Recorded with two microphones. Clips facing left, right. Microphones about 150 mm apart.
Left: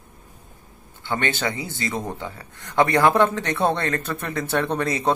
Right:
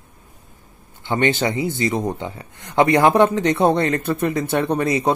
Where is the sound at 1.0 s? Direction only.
20° right (ahead or behind).